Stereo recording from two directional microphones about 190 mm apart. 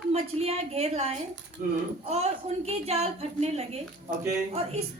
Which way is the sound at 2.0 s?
35° right (ahead or behind).